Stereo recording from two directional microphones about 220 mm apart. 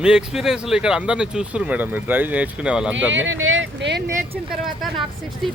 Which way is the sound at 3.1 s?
60° right (ahead or behind).